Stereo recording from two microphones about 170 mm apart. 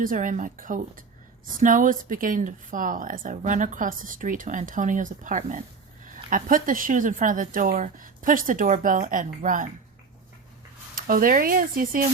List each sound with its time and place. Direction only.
0.0 s speech: 50° right (ahead or behind)
11.0 s speech: 55° right (ahead or behind)